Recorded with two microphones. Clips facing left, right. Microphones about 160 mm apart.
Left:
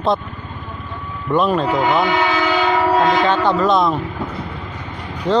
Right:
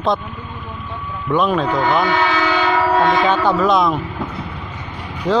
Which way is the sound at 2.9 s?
Centre (ahead or behind).